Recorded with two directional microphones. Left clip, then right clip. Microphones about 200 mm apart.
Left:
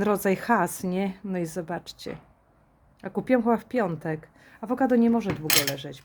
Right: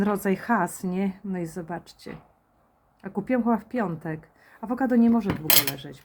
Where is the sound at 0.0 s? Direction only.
35° left (ahead or behind).